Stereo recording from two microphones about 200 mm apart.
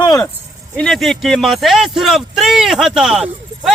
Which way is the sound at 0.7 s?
Centre (ahead or behind).